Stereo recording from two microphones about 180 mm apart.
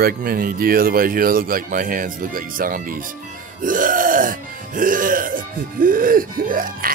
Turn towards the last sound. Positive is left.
turn(degrees=-50)  # may be behind; listen again after turning